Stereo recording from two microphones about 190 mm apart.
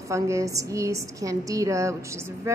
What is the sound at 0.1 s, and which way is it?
A woman's voice, 15° right (ahead or behind).